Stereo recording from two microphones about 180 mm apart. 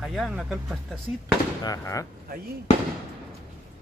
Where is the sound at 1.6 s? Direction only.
20° left (ahead or behind).